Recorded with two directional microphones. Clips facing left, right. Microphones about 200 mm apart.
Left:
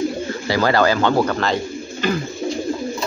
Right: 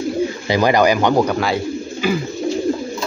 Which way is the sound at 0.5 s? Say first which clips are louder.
Right 2 dB; 15° right (ahead or behind).